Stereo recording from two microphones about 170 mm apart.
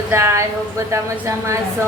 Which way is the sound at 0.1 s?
15° right (ahead or behind).